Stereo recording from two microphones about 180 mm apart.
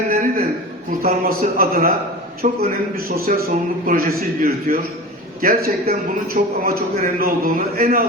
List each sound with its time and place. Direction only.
0.1 s a sound: 45° right (ahead or behind)
1.0 s a man's voice: 55° right (ahead or behind)
2.9 s a man's voice: 55° right (ahead or behind)